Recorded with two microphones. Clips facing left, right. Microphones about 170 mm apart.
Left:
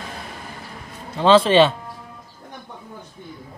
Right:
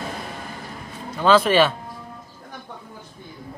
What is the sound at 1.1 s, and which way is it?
Speech, 30° left (ahead or behind).